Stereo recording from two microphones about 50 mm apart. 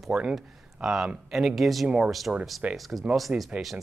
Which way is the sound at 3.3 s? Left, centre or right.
Right.